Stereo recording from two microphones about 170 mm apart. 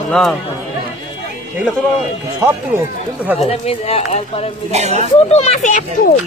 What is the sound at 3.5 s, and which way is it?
Speech, 35° left (ahead or behind).